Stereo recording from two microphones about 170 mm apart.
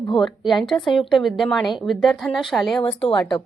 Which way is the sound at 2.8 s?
30° left (ahead or behind).